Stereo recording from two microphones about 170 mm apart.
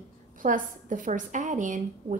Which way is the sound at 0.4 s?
50° right (ahead or behind).